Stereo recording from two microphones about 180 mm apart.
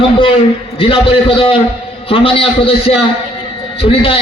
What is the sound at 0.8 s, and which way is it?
A man's voice, 30° left (ahead or behind).